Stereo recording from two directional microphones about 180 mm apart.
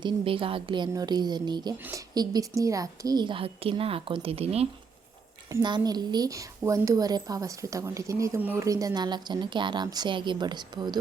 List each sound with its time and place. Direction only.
0.0 s speech: 30° right (ahead or behind)
5.5 s speech: 20° right (ahead or behind)